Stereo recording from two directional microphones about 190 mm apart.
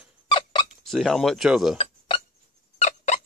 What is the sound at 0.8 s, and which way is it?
Speech, centre (ahead or behind).